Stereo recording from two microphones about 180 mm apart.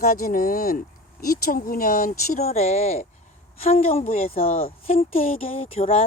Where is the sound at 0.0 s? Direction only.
55° left (ahead or behind).